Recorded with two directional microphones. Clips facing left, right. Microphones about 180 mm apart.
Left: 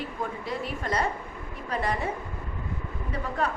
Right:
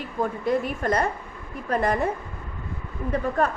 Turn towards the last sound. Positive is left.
turn(degrees=-50)  # may be behind; listen again after turning